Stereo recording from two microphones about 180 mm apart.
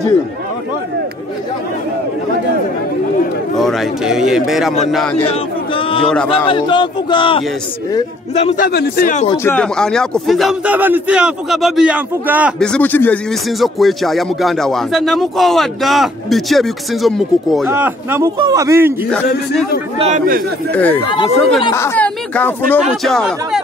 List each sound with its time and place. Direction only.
3.5 s speech: centre (ahead or behind)
5.2 s a sound: 30° left (ahead or behind)
6.2 s a man's voice: 30° left (ahead or behind)
8.6 s speech: 60° left (ahead or behind)
9.4 s speech: 10° left (ahead or behind); by 12.5 s 5° right (ahead or behind)
12.5 s speech: 5° left (ahead or behind)
17.6 s a man's voice: 10° right (ahead or behind)
20.0 s a man's voice: 45° right (ahead or behind)
20.7 s speech: 10° left (ahead or behind)
21.1 s a man's voice: 25° left (ahead or behind)
21.7 s speech: 10° left (ahead or behind)